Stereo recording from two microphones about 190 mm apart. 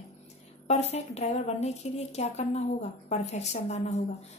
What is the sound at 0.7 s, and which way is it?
A woman's voice, 35° left (ahead or behind).